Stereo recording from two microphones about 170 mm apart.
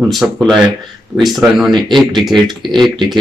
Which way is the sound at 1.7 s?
25° right (ahead or behind).